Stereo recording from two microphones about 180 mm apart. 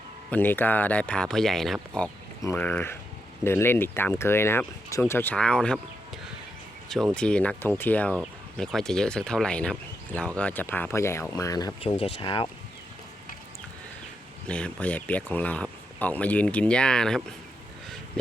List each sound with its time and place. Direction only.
0.3 s speech: 10° left (ahead or behind)
2.4 s speech: 15° left (ahead or behind)
6.9 s speech: 5° left (ahead or behind); by 11.7 s 20° left (ahead or behind)
11.8 s speech: 30° left (ahead or behind)
14.4 s speech: 5° left (ahead or behind)